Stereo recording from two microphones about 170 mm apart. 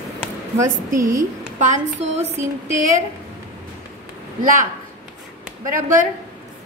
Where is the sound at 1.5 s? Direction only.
45° right (ahead or behind).